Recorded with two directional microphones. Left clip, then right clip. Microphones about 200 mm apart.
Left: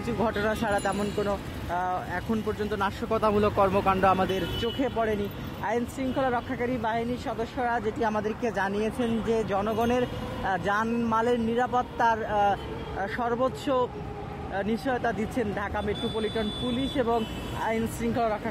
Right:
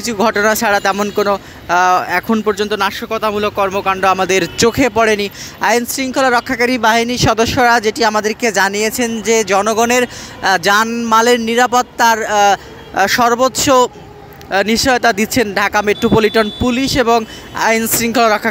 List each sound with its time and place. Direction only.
0.0 s speech: 20° right (ahead or behind)
4.6 s speech: 40° right (ahead or behind); by 9.6 s 15° right (ahead or behind)
9.6 s speech: 30° right (ahead or behind)